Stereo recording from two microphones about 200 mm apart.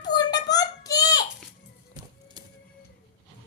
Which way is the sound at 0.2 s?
20° left (ahead or behind).